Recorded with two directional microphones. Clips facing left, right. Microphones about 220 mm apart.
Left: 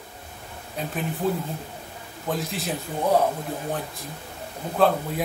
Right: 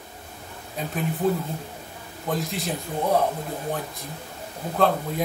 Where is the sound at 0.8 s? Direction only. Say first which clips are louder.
Even; centre (ahead or behind).